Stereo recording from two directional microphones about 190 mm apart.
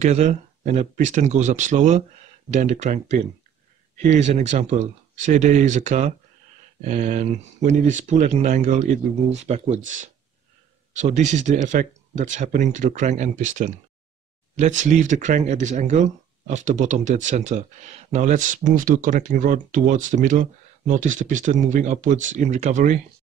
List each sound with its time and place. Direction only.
0.0 s speech: 35° right (ahead or behind)